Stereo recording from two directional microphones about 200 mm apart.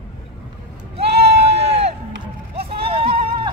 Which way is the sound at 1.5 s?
30° right (ahead or behind).